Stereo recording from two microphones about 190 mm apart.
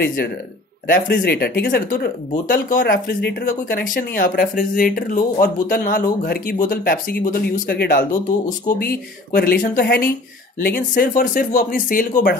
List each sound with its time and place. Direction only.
0.0 s speech: 50° left (ahead or behind)